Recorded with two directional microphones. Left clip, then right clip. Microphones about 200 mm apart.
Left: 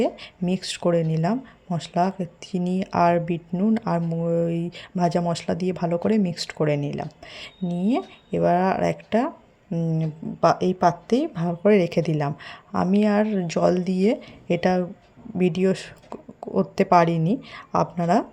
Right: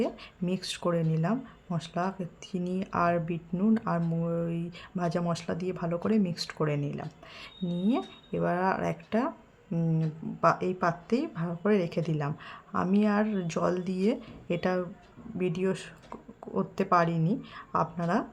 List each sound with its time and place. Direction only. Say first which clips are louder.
0.0 s speech: left 7 dB; 15° left (ahead or behind)